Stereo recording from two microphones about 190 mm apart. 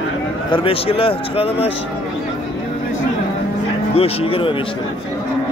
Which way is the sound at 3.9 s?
30° left (ahead or behind).